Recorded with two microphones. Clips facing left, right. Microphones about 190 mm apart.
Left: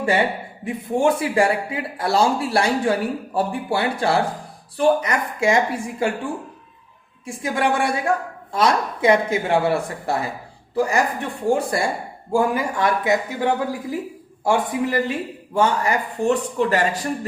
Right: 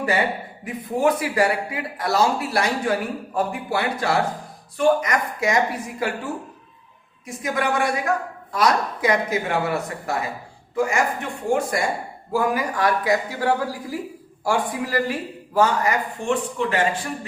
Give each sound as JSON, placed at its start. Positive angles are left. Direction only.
{"t": 0.0, "sound": "speech", "side_deg": 30}